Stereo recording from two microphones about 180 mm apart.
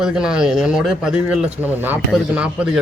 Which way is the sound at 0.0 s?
5° right (ahead or behind).